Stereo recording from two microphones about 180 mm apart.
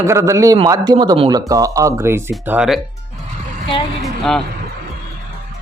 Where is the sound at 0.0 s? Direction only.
15° right (ahead or behind).